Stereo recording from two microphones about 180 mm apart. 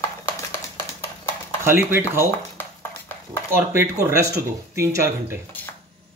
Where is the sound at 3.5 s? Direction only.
15° right (ahead or behind).